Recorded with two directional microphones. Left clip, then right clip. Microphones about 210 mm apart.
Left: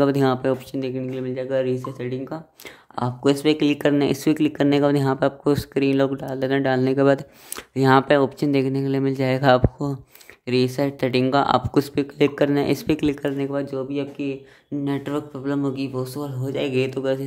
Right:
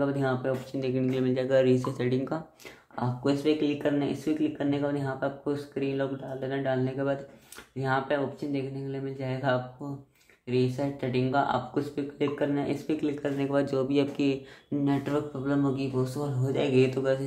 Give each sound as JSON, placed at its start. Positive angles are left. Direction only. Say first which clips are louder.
{"t": 0.0, "sound": "speech", "louder": "left 9 dB", "side_deg": 45}
{"t": 0.7, "sound": "speech", "louder": "left 3 dB", "side_deg": 20}
{"t": 1.1, "sound": "speech", "louder": "even", "side_deg": 10}
{"t": 3.0, "sound": "speech", "louder": "left 8 dB", "side_deg": 45}
{"t": 13.4, "sound": "speech", "louder": "left 2 dB", "side_deg": 15}
{"t": 14.9, "sound": "speech", "louder": "left 3 dB", "side_deg": 30}